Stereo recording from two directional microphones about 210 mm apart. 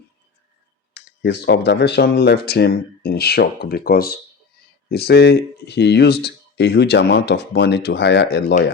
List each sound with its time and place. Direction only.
0.9 s speech: 55° left (ahead or behind)